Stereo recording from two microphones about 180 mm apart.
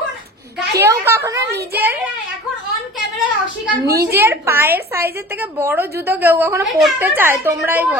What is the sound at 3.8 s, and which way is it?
Speech, 60° right (ahead or behind).